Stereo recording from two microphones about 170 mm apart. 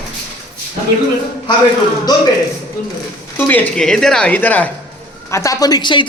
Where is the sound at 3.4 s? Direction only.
10° left (ahead or behind).